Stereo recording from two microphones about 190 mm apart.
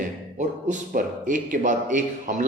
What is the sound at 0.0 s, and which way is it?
A man's voice, 40° right (ahead or behind).